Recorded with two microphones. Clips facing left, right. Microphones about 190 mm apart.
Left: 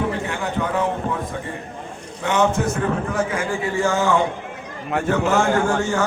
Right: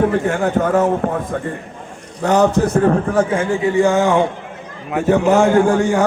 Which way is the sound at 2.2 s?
40° right (ahead or behind).